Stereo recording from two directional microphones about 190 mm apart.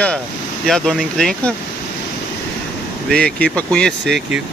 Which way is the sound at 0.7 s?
5° left (ahead or behind).